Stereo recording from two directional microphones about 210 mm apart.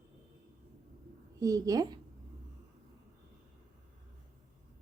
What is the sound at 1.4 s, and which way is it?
Speech, 15° right (ahead or behind).